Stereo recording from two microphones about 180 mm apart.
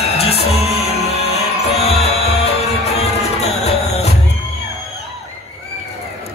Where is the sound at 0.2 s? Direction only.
35° left (ahead or behind).